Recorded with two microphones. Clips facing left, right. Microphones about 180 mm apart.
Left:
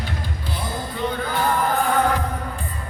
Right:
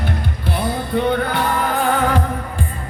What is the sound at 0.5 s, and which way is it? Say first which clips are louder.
Music: right 9 dB; 65° right (ahead or behind).